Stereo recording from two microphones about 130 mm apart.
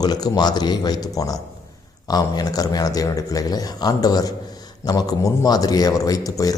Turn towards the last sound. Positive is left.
turn(degrees=25)  # may be behind; listen again after turning